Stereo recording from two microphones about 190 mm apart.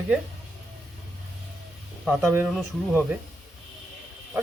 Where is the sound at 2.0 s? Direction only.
10° right (ahead or behind).